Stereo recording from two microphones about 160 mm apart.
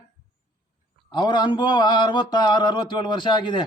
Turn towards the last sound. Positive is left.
turn(degrees=30)  # may be behind; listen again after turning